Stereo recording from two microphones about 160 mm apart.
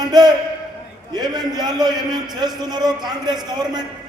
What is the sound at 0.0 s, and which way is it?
A man's voice, 25° right (ahead or behind).